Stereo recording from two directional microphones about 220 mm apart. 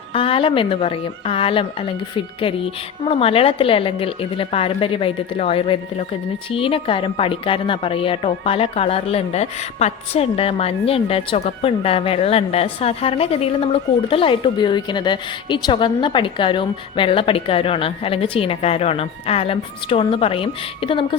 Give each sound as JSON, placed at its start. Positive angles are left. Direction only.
{"t": 0.1, "sound": "a woman's voice", "side_deg": 25}